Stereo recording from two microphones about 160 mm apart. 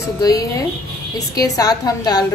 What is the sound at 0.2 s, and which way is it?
A woman's voice, 25° left (ahead or behind).